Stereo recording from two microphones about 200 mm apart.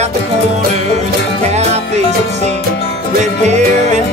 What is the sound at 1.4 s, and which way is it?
Music, 35° right (ahead or behind).